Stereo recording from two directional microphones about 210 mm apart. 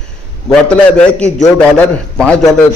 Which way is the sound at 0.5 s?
5° left (ahead or behind).